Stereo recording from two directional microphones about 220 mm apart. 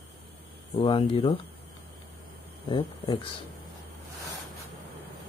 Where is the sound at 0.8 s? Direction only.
25° left (ahead or behind).